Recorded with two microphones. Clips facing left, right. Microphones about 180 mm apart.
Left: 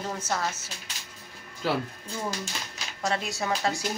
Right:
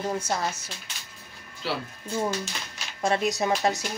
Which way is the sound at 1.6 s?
45° left (ahead or behind).